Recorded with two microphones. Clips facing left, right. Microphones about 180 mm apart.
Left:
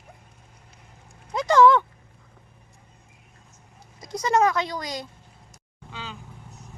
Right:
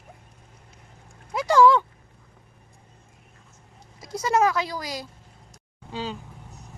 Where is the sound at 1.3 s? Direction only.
10° right (ahead or behind).